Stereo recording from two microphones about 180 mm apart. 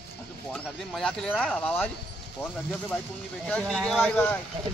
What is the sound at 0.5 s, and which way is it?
Speech, 5° left (ahead or behind).